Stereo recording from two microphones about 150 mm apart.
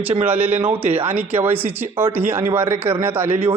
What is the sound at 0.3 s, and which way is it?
A man's voice, 15° right (ahead or behind).